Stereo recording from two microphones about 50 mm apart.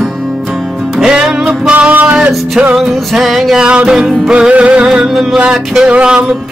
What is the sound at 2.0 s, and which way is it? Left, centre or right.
Music, right.